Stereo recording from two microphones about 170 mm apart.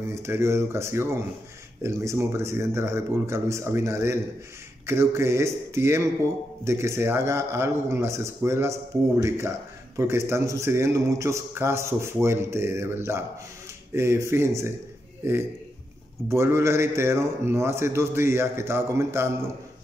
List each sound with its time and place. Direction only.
0.1 s a man's voice: 15° right (ahead or behind)